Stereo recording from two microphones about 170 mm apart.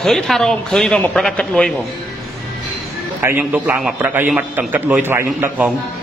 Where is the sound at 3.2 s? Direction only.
15° right (ahead or behind).